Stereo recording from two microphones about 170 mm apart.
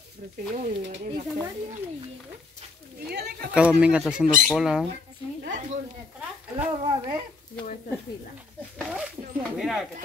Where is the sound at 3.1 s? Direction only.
70° right (ahead or behind).